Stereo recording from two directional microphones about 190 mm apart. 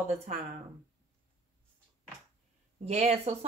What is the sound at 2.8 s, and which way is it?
Speech, 35° right (ahead or behind).